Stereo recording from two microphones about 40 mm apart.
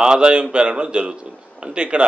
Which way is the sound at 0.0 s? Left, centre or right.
Right.